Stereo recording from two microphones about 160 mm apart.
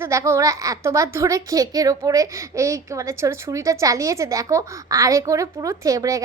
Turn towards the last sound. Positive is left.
turn(degrees=-20)  # may be behind; listen again after turning